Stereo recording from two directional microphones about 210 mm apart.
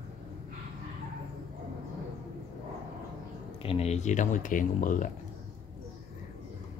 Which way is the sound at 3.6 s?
30° left (ahead or behind).